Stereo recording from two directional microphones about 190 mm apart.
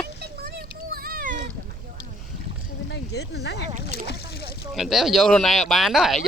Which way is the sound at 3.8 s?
60° left (ahead or behind).